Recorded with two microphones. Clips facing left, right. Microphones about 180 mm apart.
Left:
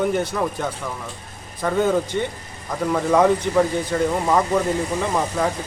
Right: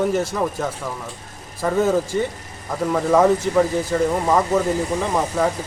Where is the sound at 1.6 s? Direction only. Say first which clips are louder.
Right 1 dB; 5° right (ahead or behind).